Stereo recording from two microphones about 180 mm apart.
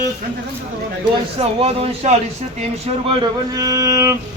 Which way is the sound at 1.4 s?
35° right (ahead or behind).